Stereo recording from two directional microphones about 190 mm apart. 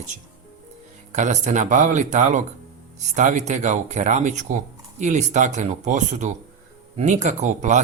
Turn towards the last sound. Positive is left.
turn(degrees=-40)  # may be behind; listen again after turning